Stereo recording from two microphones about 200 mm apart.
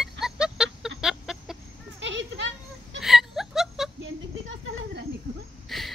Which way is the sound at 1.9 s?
65° right (ahead or behind).